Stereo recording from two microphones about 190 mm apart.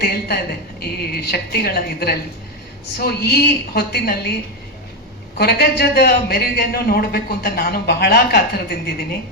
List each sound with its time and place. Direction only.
0.0 s a man's voice: 55° left (ahead or behind)
5.4 s a man's voice: 55° left (ahead or behind)